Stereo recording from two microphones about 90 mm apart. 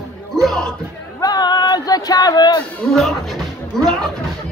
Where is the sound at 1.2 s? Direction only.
50° left (ahead or behind).